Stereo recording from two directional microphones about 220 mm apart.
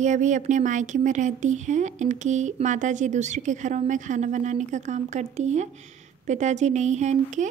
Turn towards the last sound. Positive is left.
turn(degrees=-30)  # may be behind; listen again after turning